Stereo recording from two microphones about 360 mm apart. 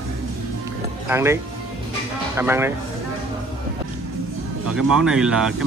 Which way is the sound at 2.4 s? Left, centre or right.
Centre.